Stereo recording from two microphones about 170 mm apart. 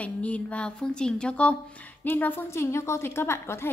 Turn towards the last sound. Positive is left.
turn(degrees=15)  # may be behind; listen again after turning